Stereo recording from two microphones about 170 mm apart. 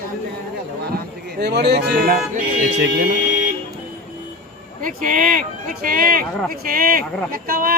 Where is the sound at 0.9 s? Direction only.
70° right (ahead or behind).